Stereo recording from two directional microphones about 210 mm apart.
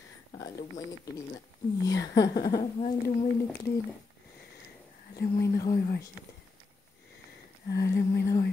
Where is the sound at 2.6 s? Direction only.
35° left (ahead or behind).